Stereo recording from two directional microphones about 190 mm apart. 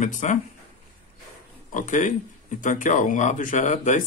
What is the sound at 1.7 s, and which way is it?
Speech, 40° left (ahead or behind).